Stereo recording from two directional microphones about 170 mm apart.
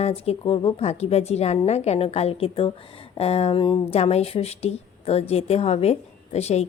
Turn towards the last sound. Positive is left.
turn(degrees=40)  # may be behind; listen again after turning